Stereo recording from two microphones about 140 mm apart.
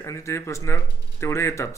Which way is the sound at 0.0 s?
20° left (ahead or behind).